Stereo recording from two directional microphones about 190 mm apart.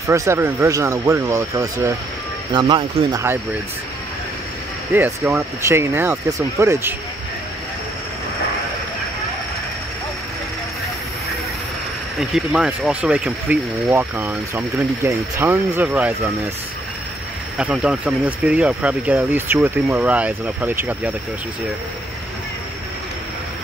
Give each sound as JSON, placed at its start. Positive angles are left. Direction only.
{"t": 0.1, "sound": "speech", "side_deg": -15}
{"t": 4.9, "sound": "speech", "side_deg": -10}
{"t": 12.2, "sound": "speech", "side_deg": -5}
{"t": 17.6, "sound": "speech", "side_deg": -5}